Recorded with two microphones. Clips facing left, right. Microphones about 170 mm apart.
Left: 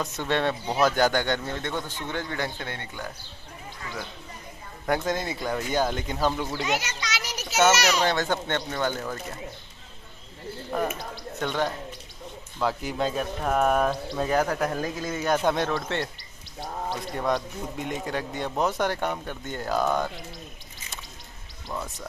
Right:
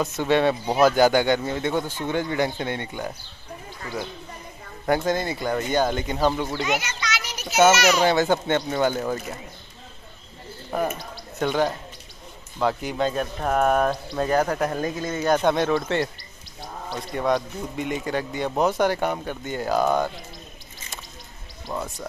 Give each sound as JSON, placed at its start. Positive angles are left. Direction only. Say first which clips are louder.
{"t": 0.0, "sound": "a man's voice", "louder": "right 6 dB", "side_deg": -5}
{"t": 4.8, "sound": "speech", "louder": "right 4 dB", "side_deg": 0}
{"t": 6.8, "sound": "children playing", "louder": "right 3 dB", "side_deg": 40}
{"t": 7.5, "sound": "a man's voice", "louder": "right 4 dB", "side_deg": -10}
{"t": 11.4, "sound": "speech", "louder": "right 5 dB", "side_deg": -5}
{"t": 17.1, "sound": "speech", "louder": "right 5 dB", "side_deg": 0}
{"t": 21.7, "sound": "a man's voice", "louder": "right 4 dB", "side_deg": -15}